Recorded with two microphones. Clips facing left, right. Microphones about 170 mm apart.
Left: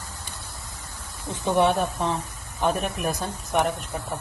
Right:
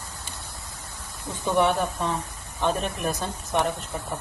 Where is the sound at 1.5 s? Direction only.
20° left (ahead or behind).